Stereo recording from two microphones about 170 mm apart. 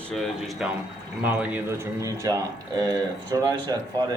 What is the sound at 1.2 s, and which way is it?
Speech, 10° right (ahead or behind).